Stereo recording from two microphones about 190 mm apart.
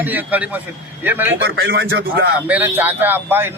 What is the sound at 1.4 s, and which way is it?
Speech, 65° right (ahead or behind).